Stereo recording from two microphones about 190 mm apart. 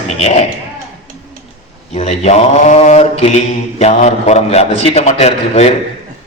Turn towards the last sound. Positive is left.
turn(degrees=35)  # may be behind; listen again after turning